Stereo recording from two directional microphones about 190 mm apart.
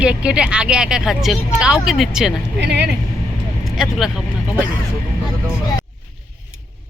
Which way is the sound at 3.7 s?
Centre (ahead or behind).